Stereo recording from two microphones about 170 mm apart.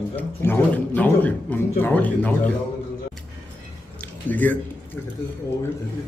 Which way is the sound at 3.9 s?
10° left (ahead or behind).